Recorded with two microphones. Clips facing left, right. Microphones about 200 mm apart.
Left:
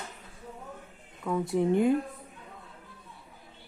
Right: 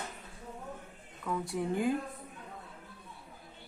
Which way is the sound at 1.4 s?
20° left (ahead or behind).